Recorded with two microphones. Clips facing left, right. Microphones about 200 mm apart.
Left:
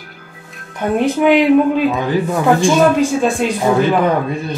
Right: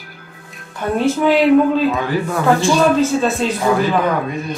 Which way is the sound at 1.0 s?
15° left (ahead or behind).